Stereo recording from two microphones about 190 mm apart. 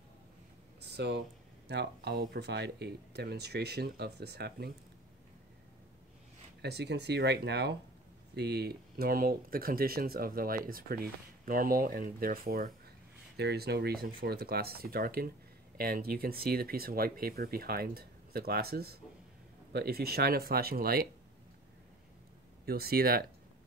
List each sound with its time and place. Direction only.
0.7 s a sound: 60° right (ahead or behind)
1.7 s speech: 60° right (ahead or behind)
6.6 s speech: 60° right (ahead or behind)
13.4 s speech: 60° right (ahead or behind)
22.7 s speech: 55° right (ahead or behind)